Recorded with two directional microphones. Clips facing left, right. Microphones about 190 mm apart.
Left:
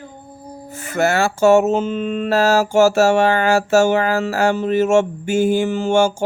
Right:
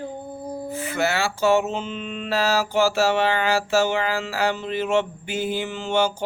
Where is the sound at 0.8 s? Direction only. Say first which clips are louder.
Left 7 dB; 45° left (ahead or behind).